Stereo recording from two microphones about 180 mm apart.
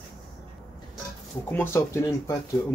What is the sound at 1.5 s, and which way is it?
Speech, 10° left (ahead or behind).